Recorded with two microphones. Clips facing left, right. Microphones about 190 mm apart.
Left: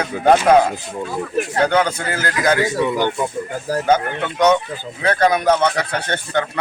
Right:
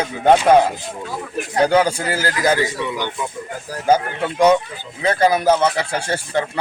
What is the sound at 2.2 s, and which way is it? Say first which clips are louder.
Speech: left 1 dB; 30° right (ahead or behind).